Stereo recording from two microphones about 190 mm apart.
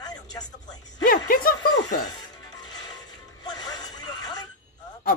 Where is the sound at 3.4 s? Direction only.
20° left (ahead or behind).